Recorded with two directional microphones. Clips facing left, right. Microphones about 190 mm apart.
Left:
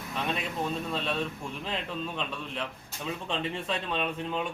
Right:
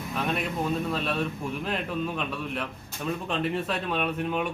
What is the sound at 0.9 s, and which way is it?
A man's voice, 10° right (ahead or behind).